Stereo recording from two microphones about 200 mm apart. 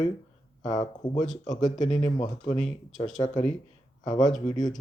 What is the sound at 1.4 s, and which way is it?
Speech, 40° left (ahead or behind).